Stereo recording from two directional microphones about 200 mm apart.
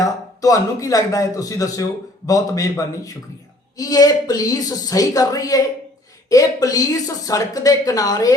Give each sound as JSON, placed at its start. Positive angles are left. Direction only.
{"t": 0.0, "sound": "a man's voice", "side_deg": 15}